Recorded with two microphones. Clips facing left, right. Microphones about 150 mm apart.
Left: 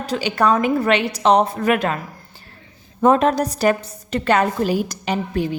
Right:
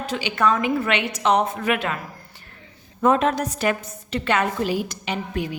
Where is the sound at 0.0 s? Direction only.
40° left (ahead or behind).